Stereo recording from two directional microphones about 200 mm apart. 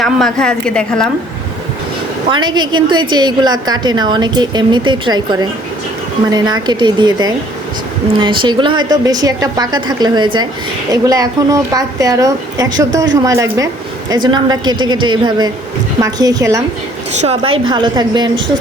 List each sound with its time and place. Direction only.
0.0 s a woman's voice: centre (ahead or behind)
2.3 s a woman's voice: 20° right (ahead or behind)
17.2 s a woman's voice: 30° right (ahead or behind)